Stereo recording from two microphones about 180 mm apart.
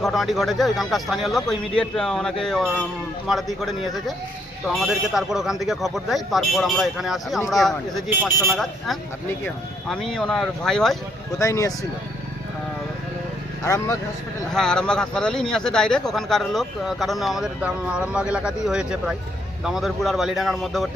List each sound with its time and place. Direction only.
0.0 s speech: centre (ahead or behind)
11.3 s speech: 20° left (ahead or behind)
13.7 s speech: 20° left (ahead or behind)
14.5 s speech: 5° left (ahead or behind)